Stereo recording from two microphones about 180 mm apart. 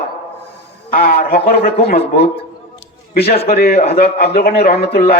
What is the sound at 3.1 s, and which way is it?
Speech, 30° left (ahead or behind).